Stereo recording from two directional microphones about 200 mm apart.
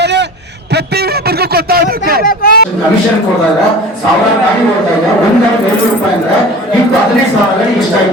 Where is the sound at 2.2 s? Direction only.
45° left (ahead or behind).